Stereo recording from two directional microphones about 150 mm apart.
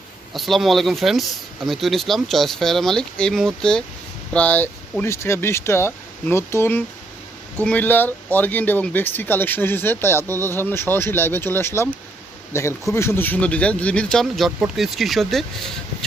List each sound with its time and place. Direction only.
0.3 s speech: centre (ahead or behind)